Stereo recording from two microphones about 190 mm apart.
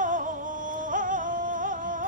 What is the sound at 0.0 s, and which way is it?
Music, 40° right (ahead or behind).